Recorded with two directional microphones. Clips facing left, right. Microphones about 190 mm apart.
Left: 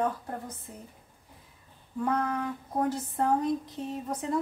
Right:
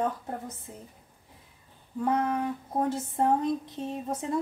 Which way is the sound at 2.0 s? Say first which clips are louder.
Right 2 dB; 25° right (ahead or behind).